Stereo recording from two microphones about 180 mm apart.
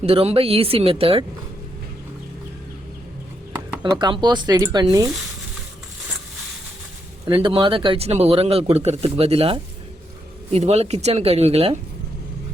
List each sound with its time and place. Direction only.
0.0 s speech: 35° right (ahead or behind)
3.9 s speech: 25° right (ahead or behind)
7.3 s speech: 30° right (ahead or behind)